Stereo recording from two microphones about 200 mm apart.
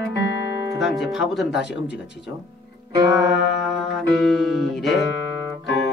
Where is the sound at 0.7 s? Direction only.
Centre (ahead or behind).